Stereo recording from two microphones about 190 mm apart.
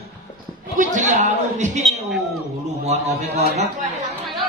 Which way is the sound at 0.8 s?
40° right (ahead or behind).